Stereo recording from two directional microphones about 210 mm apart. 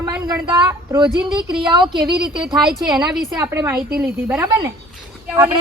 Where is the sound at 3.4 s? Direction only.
10° right (ahead or behind).